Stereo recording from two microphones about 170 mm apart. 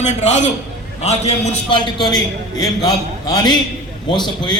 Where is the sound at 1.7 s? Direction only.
25° left (ahead or behind).